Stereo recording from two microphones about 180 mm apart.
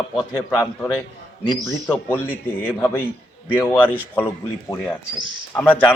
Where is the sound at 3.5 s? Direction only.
10° left (ahead or behind).